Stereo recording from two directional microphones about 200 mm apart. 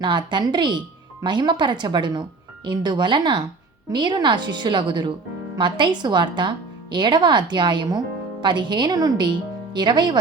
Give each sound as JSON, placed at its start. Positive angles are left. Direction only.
{"t": 0.0, "sound": "a woman's voice", "side_deg": -25}